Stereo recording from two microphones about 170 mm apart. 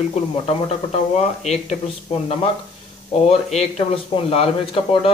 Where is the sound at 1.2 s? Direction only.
40° left (ahead or behind).